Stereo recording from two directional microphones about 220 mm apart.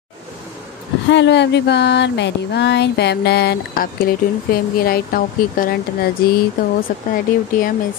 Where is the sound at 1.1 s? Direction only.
50° left (ahead or behind).